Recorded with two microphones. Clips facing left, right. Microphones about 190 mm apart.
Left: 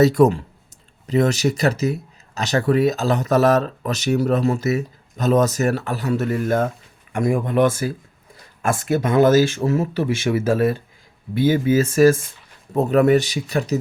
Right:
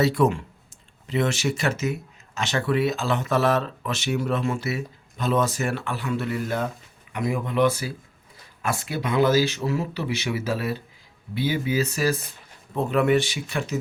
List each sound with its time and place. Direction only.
0.0 s speech: 40° left (ahead or behind)